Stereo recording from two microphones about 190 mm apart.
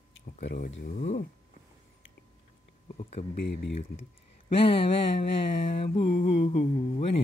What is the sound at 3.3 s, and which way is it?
Speech, 60° left (ahead or behind).